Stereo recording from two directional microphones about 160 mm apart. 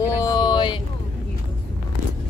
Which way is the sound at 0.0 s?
20° left (ahead or behind).